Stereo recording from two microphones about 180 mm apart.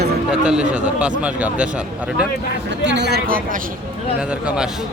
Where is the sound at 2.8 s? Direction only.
70° right (ahead or behind).